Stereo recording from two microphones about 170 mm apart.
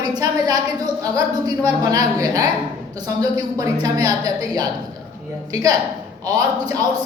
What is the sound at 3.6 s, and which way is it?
A woman's voice, 20° right (ahead or behind).